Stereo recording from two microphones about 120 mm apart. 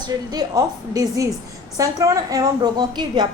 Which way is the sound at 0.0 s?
35° right (ahead or behind).